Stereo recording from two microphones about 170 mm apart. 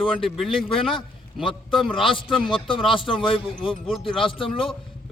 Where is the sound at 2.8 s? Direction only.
30° left (ahead or behind).